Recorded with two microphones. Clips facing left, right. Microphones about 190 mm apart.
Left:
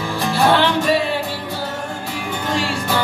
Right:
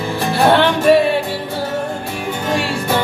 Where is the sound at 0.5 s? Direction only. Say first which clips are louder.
Right 8 dB; 55° right (ahead or behind).